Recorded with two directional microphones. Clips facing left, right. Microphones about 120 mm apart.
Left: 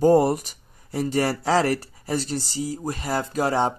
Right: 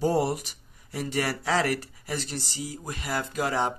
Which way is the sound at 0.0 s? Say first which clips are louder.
Left 8 dB; 50° left (ahead or behind).